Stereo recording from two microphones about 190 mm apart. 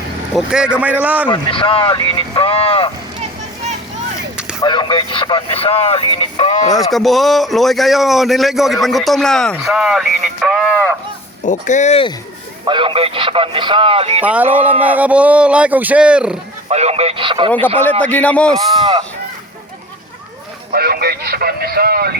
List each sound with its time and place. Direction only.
0.3 s a man's voice: 5° right (ahead or behind)
1.3 s speech: 25° left (ahead or behind)
4.6 s speech: 25° left (ahead or behind)
6.9 s a man's voice: centre (ahead or behind)
11.4 s speech: 40° left (ahead or behind)
12.6 s speech: 25° right (ahead or behind)
14.3 s speech: 10° right (ahead or behind)
16.6 s speech: 35° right (ahead or behind)
18.0 s speech: 5° left (ahead or behind)
20.7 s speech: 55° right (ahead or behind)